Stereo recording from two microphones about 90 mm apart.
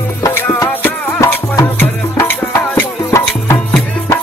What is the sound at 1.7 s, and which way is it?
Music, 30° left (ahead or behind).